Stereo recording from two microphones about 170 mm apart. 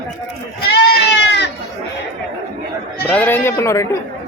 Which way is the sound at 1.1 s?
90° left.